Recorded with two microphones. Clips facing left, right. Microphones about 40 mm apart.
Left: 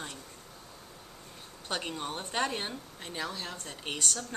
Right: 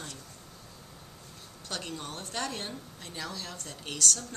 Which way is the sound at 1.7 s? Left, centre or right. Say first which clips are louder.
Left 3 dB; left.